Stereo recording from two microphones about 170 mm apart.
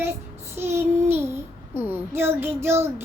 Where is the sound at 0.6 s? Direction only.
15° right (ahead or behind).